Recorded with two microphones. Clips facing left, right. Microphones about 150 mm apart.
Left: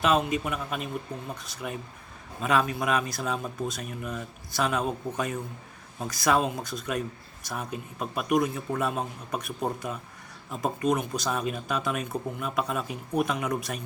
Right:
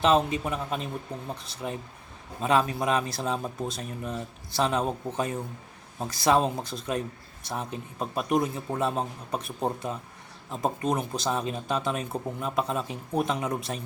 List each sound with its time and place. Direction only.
0.0 s speech: 30° right (ahead or behind)